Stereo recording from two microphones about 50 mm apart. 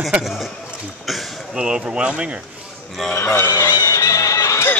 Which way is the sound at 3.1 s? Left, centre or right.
Left.